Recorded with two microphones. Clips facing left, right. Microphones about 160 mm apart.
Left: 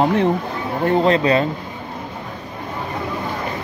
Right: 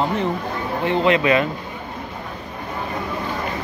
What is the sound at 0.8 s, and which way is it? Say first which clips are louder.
Speech: left 2 dB; 35° left (ahead or behind).